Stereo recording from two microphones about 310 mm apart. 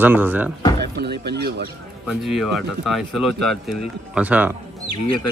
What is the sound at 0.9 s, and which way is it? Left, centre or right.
Speech, right.